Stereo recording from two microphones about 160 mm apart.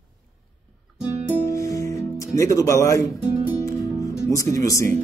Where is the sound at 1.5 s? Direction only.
20° left (ahead or behind).